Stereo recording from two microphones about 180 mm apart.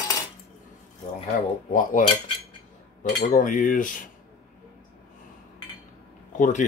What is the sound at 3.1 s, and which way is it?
Speech, 50° left (ahead or behind).